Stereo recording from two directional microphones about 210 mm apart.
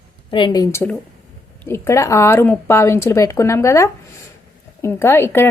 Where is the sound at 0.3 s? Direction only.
20° left (ahead or behind).